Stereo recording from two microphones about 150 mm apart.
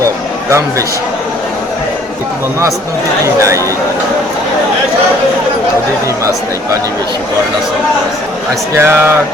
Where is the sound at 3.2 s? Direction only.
20° right (ahead or behind).